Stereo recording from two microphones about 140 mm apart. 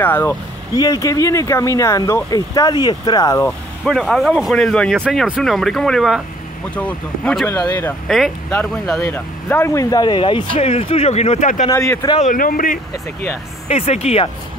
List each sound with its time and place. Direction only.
0.0 s speech: 15° left (ahead or behind)
0.7 s speech: 25° left (ahead or behind)
3.4 s speech: 5° left (ahead or behind)
8.1 s speech: centre (ahead or behind)
9.0 s speech: 15° left (ahead or behind); by 11.6 s 60° left (ahead or behind)
11.7 s speech: 20° left (ahead or behind)
12.2 s speech: 75° left (ahead or behind)
13.7 s speech: 50° left (ahead or behind)